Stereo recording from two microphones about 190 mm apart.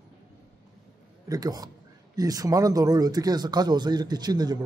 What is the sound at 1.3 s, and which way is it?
Speech, 20° right (ahead or behind).